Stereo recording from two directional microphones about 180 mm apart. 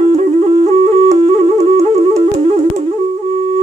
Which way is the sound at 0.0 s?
40° right (ahead or behind).